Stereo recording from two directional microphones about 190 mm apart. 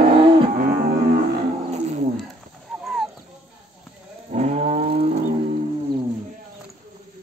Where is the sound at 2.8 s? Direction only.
Centre (ahead or behind).